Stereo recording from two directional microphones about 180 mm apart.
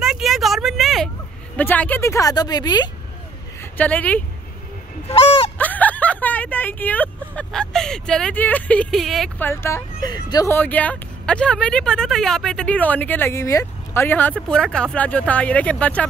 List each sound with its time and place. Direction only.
0.0 s vehicle: centre (ahead or behind)
1.6 s speech: 10° left (ahead or behind)
3.7 s speech: 10° left (ahead or behind)
5.1 s honk: 30° left (ahead or behind)
5.6 s speech: 10° left (ahead or behind)
9.5 s speech: 15° left (ahead or behind)